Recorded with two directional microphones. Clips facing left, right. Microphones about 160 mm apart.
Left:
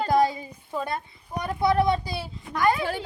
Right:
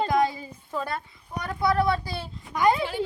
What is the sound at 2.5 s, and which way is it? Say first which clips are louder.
Speech: right 1 dB; 15° right (ahead or behind).